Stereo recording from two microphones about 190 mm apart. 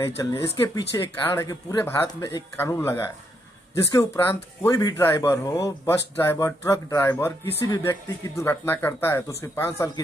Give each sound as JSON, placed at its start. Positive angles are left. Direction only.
{"t": 0.2, "sound": "speech", "side_deg": 15}